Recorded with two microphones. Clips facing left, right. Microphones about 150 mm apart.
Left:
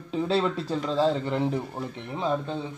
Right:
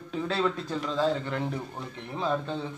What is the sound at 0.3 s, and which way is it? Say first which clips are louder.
Speech: left 3 dB; 30° left (ahead or behind).